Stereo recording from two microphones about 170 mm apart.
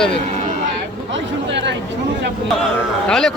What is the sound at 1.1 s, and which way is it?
Chatter, 90° right.